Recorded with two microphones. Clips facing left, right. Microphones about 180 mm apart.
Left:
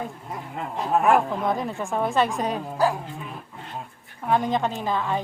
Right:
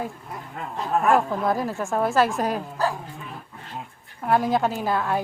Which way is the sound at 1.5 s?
5° right (ahead or behind).